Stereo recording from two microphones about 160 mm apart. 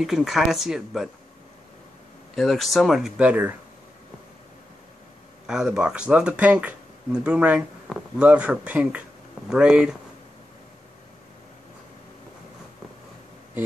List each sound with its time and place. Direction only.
0.0 s speech: centre (ahead or behind)
2.3 s speech: centre (ahead or behind)
5.5 s speech: 5° right (ahead or behind)